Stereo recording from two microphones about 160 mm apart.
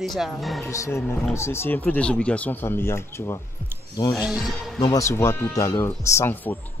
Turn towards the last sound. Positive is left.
turn(degrees=15)  # may be behind; listen again after turning